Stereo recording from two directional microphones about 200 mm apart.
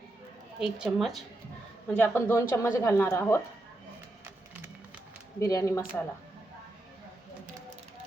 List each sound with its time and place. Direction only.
0.6 s speech: centre (ahead or behind)
2.0 s speech: 10° left (ahead or behind)
5.4 s speech: 15° left (ahead or behind)